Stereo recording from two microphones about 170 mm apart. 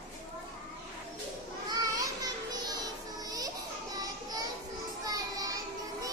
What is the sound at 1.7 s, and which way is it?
Children playing, 20° right (ahead or behind).